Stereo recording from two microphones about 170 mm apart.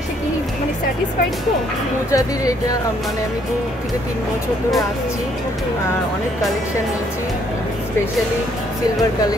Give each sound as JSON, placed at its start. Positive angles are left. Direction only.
{"t": 2.0, "sound": "speech", "side_deg": 20}